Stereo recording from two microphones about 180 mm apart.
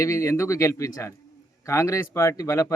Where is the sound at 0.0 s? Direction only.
15° left (ahead or behind).